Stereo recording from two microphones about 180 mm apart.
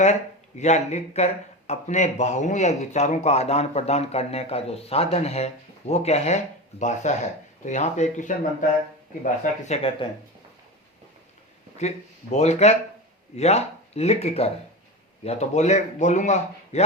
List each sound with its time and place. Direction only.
0.6 s speech: 40° left (ahead or behind)
11.8 s speech: 40° left (ahead or behind)